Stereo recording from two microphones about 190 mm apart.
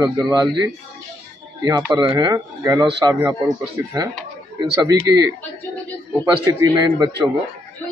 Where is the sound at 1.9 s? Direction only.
20° right (ahead or behind).